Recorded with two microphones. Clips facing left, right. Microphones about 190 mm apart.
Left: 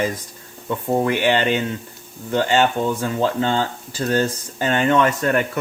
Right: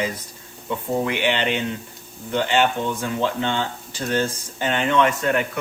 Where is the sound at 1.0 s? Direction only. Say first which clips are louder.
Left 5 dB; 45° left (ahead or behind).